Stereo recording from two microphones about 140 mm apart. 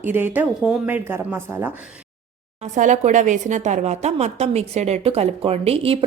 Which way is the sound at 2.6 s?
60° right (ahead or behind).